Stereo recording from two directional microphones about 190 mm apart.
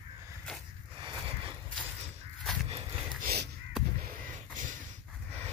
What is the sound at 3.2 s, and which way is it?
Crow, 60° right (ahead or behind).